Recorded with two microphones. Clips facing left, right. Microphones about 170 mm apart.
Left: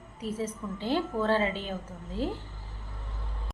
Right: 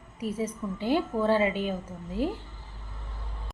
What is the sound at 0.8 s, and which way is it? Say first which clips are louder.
Speech: right 3 dB; 15° right (ahead or behind).